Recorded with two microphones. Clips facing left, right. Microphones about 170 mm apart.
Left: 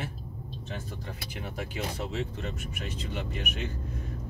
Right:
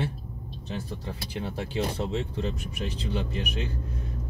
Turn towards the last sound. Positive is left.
turn(degrees=-35)  # may be behind; listen again after turning